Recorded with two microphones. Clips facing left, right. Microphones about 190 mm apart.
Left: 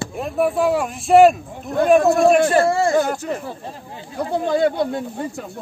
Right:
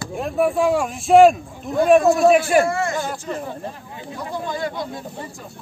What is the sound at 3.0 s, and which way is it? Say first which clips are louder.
Speech: left 6 dB; 60° left (ahead or behind).